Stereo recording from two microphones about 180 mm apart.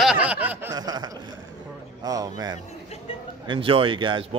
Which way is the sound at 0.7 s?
20° right (ahead or behind).